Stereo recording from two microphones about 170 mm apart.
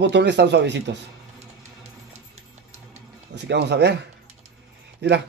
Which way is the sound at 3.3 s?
85° right.